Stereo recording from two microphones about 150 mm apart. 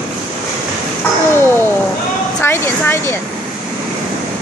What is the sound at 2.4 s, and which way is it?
Speech, 15° left (ahead or behind).